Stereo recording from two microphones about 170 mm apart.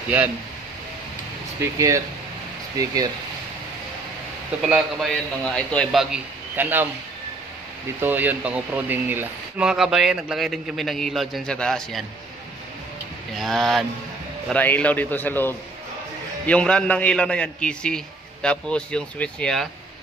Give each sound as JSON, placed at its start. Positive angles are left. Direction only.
{"t": 1.6, "sound": "speech", "side_deg": -20}
{"t": 4.6, "sound": "speech", "side_deg": -5}
{"t": 8.0, "sound": "speech", "side_deg": -10}
{"t": 13.4, "sound": "a man's voice", "side_deg": 0}